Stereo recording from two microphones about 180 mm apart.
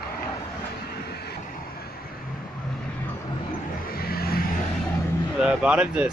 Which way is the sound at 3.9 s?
60° left (ahead or behind).